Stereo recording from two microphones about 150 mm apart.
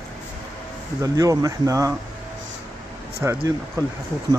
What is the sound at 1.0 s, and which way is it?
Speech, 20° right (ahead or behind).